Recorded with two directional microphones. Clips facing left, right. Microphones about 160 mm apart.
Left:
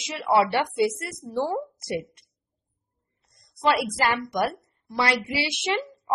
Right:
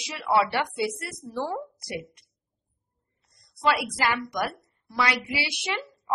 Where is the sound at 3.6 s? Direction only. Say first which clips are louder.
Left 2 dB; 25° left (ahead or behind).